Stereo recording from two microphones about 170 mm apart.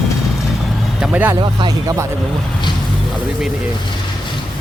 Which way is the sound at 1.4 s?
25° right (ahead or behind).